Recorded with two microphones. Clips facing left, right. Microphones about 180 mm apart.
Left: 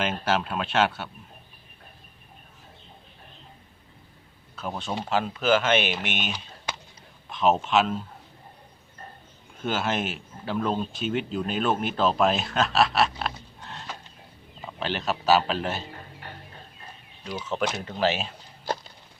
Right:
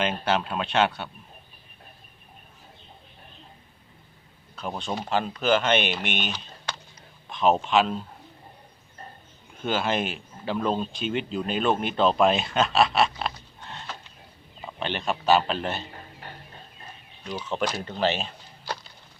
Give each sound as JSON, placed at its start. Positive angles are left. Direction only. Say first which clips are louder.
{"t": 0.0, "sound": "speech", "louder": "right 1 dB", "side_deg": 5}
{"t": 4.6, "sound": "speech", "louder": "even", "side_deg": 5}
{"t": 9.6, "sound": "speech", "louder": "right 1 dB", "side_deg": 5}
{"t": 13.6, "sound": "a sound", "louder": "right 1 dB", "side_deg": 0}
{"t": 14.7, "sound": "speech", "louder": "even", "side_deg": 0}
{"t": 17.5, "sound": "speech", "louder": "even", "side_deg": 0}